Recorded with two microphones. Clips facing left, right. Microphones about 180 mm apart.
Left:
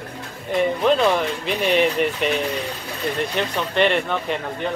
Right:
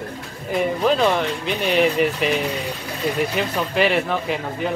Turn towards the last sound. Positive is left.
turn(degrees=-5)  # may be behind; listen again after turning